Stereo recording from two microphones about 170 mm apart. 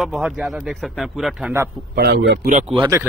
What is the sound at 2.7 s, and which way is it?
Speech, 20° right (ahead or behind).